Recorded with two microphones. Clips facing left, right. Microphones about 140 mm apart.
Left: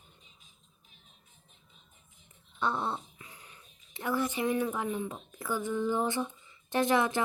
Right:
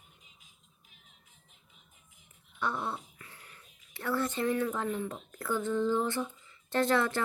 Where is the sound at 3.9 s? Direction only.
20° left (ahead or behind).